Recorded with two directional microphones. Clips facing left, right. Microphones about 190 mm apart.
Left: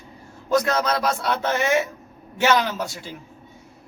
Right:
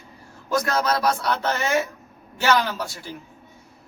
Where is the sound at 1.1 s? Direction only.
20° left (ahead or behind).